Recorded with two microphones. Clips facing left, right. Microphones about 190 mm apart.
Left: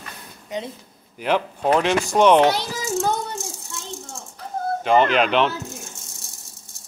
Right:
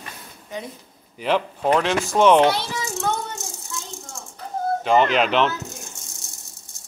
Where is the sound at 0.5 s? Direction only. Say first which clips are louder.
Left 3 dB; 20° left (ahead or behind).